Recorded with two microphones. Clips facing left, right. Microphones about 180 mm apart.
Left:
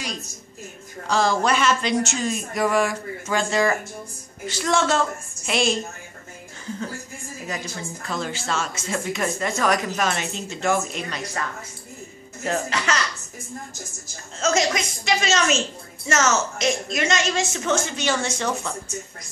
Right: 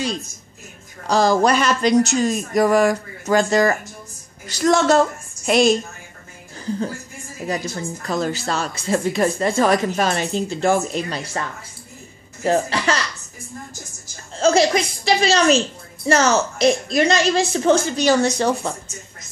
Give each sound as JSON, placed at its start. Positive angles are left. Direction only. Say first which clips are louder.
{"t": 1.0, "sound": "a woman's voice", "louder": "right 5 dB", "side_deg": -40}
{"t": 7.4, "sound": "a woman's voice", "louder": "right 8 dB", "side_deg": -35}
{"t": 12.4, "sound": "a woman's voice", "louder": "right 6 dB", "side_deg": -30}
{"t": 14.4, "sound": "a woman's voice", "louder": "right 6 dB", "side_deg": -30}